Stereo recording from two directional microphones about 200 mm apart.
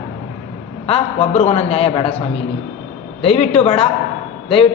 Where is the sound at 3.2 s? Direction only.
30° left (ahead or behind).